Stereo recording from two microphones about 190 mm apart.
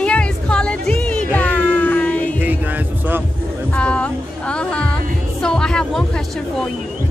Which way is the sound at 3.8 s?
5° left (ahead or behind).